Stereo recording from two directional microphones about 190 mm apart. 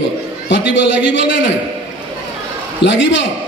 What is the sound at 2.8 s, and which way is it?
Speech, 70° left (ahead or behind).